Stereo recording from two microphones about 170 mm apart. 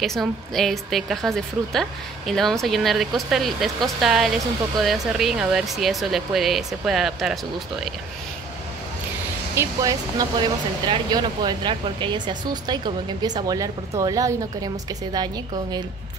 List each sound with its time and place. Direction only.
0.0 s speech: centre (ahead or behind)
9.6 s speech: 20° right (ahead or behind)